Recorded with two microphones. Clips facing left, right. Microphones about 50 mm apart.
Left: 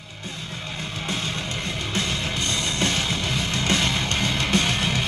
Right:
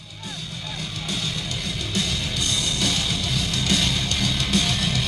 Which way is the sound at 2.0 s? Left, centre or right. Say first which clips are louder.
Even; left.